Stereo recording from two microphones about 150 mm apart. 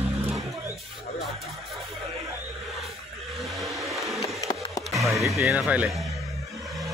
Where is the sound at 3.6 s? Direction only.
Centre (ahead or behind).